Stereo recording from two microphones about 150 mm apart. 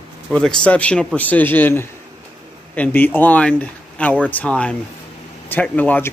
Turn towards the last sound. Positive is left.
turn(degrees=10)  # may be behind; listen again after turning